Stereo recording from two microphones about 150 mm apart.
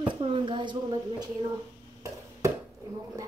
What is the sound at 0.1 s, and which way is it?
Speech, 35° right (ahead or behind).